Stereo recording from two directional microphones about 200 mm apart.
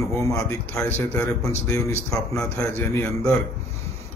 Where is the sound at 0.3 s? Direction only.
15° left (ahead or behind).